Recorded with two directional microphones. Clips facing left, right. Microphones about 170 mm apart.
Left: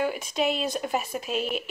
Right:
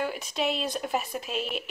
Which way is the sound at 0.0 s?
Centre (ahead or behind).